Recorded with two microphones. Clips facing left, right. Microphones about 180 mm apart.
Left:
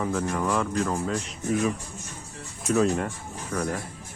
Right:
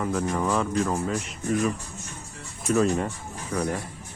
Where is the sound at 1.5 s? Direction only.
5° left (ahead or behind); by 3.7 s 10° right (ahead or behind).